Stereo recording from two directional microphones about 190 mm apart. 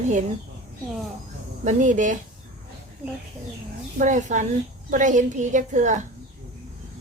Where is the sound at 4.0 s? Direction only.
40° right (ahead or behind).